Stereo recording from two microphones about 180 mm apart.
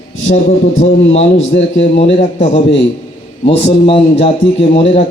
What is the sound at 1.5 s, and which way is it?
Speech, 60° left (ahead or behind).